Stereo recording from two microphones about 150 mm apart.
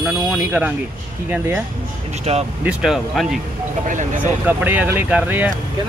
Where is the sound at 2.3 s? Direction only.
40° right (ahead or behind).